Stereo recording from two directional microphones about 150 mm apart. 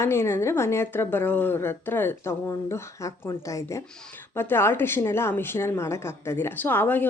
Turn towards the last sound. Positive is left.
turn(degrees=10)  # may be behind; listen again after turning